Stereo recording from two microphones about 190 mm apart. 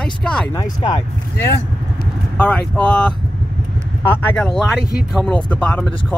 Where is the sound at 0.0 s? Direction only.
5° left (ahead or behind).